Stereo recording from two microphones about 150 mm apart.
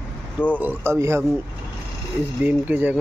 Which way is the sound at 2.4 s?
10° right (ahead or behind).